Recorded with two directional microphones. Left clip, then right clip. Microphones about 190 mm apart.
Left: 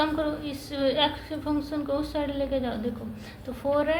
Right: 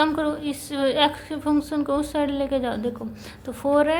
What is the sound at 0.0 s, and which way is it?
A woman's voice, 50° right (ahead or behind).